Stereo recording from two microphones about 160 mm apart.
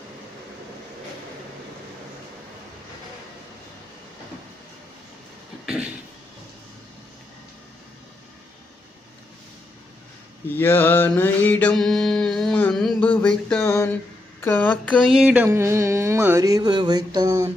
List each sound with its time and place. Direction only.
10.5 s mantra: 15° left (ahead or behind)
14.4 s speech: 10° left (ahead or behind)
15.1 s a sound: 5° right (ahead or behind)
15.4 s mantra: 15° right (ahead or behind)